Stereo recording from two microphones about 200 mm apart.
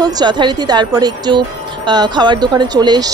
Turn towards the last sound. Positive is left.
turn(degrees=-20)  # may be behind; listen again after turning